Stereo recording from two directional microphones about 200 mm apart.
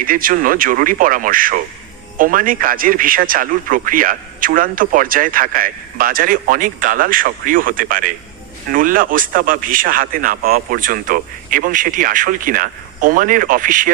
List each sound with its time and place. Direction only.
0.0 s a man's voice: 45° right (ahead or behind)